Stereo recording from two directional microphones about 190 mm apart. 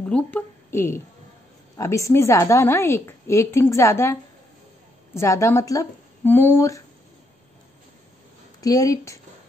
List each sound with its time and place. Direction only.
0.1 s a woman's voice: 10° left (ahead or behind)
8.5 s a woman's voice: 20° left (ahead or behind)